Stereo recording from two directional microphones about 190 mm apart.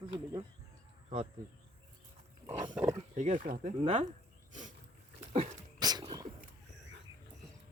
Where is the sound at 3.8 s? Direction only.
30° right (ahead or behind).